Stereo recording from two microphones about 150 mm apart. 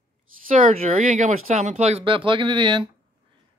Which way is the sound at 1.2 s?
55° right (ahead or behind).